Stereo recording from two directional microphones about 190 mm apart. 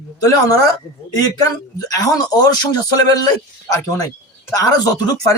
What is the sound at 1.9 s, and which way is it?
A man's voice, 20° left (ahead or behind).